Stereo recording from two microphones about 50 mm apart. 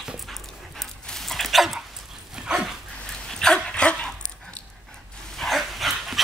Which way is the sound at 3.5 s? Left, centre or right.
Left.